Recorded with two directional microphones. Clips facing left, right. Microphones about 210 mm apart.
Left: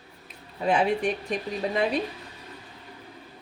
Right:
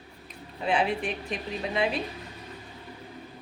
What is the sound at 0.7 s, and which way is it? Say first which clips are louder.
Speech: left 3 dB; 40° left (ahead or behind).